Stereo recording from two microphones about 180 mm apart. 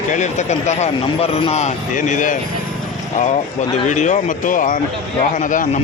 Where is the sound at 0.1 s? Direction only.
40° left (ahead or behind).